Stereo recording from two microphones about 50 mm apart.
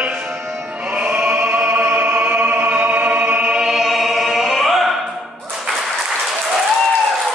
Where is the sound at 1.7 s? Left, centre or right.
Right.